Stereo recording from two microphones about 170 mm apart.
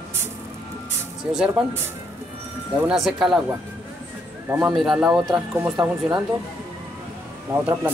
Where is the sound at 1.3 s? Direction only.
10° right (ahead or behind).